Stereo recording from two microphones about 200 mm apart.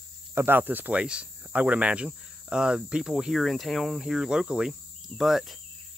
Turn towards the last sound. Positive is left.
turn(degrees=0)  # may be behind; listen again after turning